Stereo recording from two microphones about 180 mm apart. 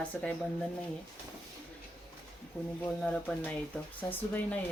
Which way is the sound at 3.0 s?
5° left (ahead or behind).